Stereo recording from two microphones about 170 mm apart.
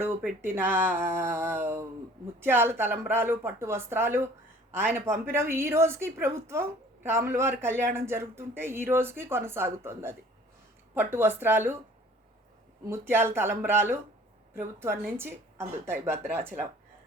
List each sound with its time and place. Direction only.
0.4 s a woman's voice: 10° right (ahead or behind)
12.8 s a woman's voice: 15° right (ahead or behind)
15.2 s a woman's voice: 15° right (ahead or behind)